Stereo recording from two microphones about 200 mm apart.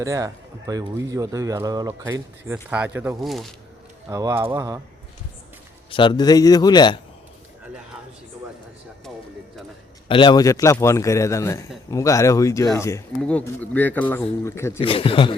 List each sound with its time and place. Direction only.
0.0 s speech: 15° right (ahead or behind); by 3.5 s centre (ahead or behind)
4.1 s speech: 15° right (ahead or behind)
5.9 s a man's voice: 25° left (ahead or behind)
10.1 s speech: 25° left (ahead or behind)
14.8 s a man's voice: 25° left (ahead or behind)